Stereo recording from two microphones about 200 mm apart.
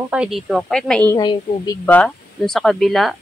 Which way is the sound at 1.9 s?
5° left (ahead or behind).